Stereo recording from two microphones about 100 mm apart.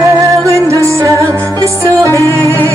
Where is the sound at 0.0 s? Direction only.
30° right (ahead or behind).